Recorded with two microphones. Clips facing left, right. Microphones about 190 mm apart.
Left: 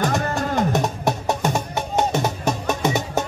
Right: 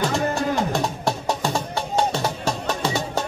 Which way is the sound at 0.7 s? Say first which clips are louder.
Left 2 dB; 20° left (ahead or behind).